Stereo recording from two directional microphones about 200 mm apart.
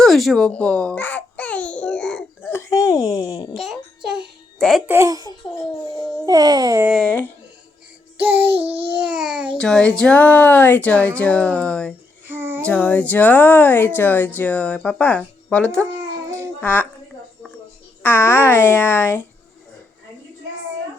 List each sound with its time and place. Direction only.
0.0 s babbling: centre (ahead or behind); by 3.5 s 15° left (ahead or behind)
3.5 s music: centre (ahead or behind)
4.9 s speech: 15° right (ahead or behind)
6.2 s babbling: 20° right (ahead or behind)
6.9 s speech: 5° left (ahead or behind)
8.2 s speech: 10° right (ahead or behind)
8.5 s babbling: 30° right (ahead or behind)
8.9 s a child's voice: 5° right (ahead or behind)
12.3 s a sound: 10° right (ahead or behind)
12.6 s speech: 5° left (ahead or behind)
16.4 s child singing: 10° left (ahead or behind)
18.0 s speech: 10° left (ahead or behind)